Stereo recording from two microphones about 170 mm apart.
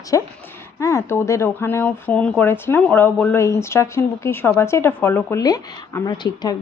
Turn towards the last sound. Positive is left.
turn(degrees=25)  # may be behind; listen again after turning